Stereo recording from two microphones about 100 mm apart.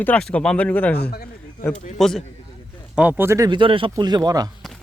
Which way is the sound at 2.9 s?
10° right (ahead or behind).